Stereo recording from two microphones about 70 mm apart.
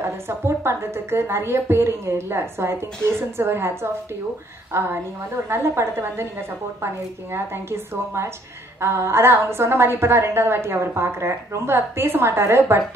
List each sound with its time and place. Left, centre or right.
0.0 s a woman's voice: right
7.7 s a woman's voice: right